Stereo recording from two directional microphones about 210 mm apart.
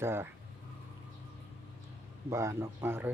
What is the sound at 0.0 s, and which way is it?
Speech, 10° right (ahead or behind).